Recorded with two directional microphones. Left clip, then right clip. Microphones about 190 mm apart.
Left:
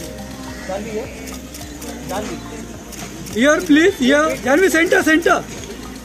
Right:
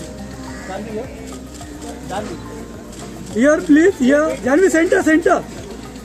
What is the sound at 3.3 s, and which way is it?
Speech, 15° right (ahead or behind).